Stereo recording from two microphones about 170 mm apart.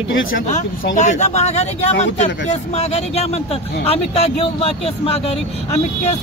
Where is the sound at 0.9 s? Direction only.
45° left (ahead or behind).